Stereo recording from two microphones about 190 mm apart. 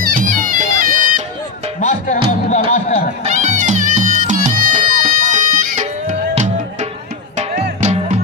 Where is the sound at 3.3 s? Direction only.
40° right (ahead or behind).